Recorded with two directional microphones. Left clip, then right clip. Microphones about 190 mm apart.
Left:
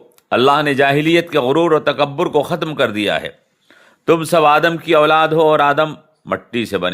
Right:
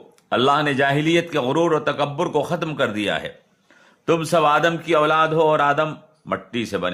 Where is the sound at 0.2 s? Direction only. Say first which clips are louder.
Left 5 dB; 30° left (ahead or behind).